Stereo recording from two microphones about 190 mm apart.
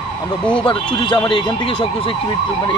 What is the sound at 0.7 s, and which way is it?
Speech, 25° left (ahead or behind).